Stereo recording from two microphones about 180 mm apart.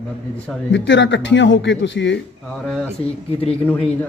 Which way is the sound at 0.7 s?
85° left.